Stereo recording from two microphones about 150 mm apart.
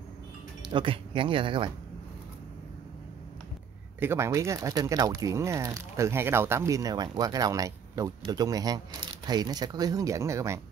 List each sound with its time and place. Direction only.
0.6 s speech: 35° right (ahead or behind)
4.0 s speech: 15° right (ahead or behind)